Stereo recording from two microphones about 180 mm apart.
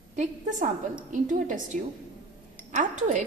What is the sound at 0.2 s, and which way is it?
A woman's voice, 45° right (ahead or behind).